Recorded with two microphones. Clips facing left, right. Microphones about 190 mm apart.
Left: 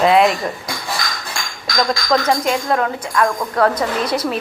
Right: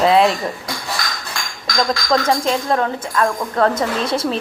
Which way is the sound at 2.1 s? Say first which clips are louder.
Even; 5° left (ahead or behind).